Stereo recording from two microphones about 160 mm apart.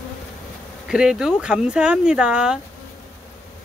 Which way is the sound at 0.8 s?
5° right (ahead or behind).